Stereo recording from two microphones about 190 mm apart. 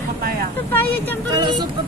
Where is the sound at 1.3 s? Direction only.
25° right (ahead or behind).